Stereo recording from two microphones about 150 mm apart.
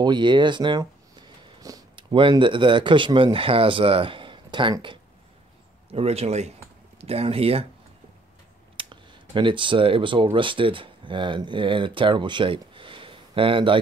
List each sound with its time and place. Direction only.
0.0 s speech: 30° right (ahead or behind)
8.7 s speech: 35° right (ahead or behind)